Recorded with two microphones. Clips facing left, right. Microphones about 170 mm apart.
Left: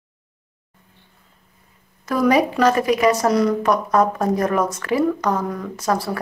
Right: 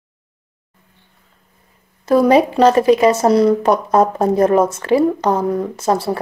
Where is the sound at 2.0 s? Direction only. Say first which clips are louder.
Right 5 dB; 30° right (ahead or behind).